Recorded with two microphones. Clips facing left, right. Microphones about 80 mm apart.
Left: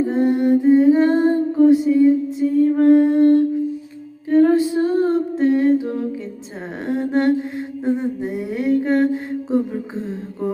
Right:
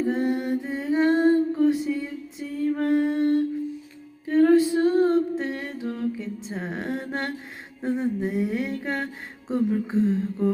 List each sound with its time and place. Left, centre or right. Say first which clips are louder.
0.0 s humming: left 7 dB; centre
0.6 s music: left 12 dB; centre
2.4 s music: left 13 dB; left
2.7 s music: left 8 dB; centre
4.3 s a sound: left 3 dB; centre